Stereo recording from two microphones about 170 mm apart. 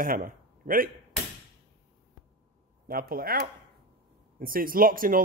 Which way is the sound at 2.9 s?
55° right (ahead or behind).